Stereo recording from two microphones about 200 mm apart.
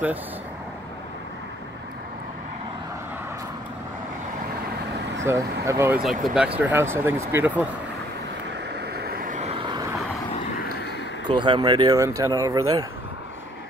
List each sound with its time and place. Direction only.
5.2 s speech: 15° right (ahead or behind)
8.7 s vehicle: 55° right (ahead or behind); by 9.9 s 20° right (ahead or behind)
11.2 s speech: 25° right (ahead or behind)